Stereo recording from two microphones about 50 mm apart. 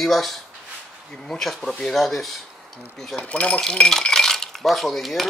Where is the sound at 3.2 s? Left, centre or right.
Left.